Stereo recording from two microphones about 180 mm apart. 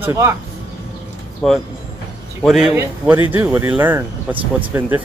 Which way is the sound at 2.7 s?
15° right (ahead or behind).